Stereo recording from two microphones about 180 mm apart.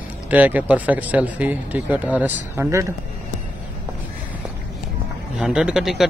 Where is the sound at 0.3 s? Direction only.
10° right (ahead or behind).